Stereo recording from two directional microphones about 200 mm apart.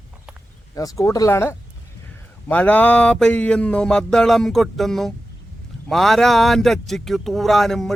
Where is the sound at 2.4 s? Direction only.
5° left (ahead or behind).